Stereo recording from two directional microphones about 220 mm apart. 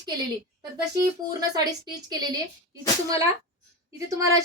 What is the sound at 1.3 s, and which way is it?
A woman's voice, 15° right (ahead or behind).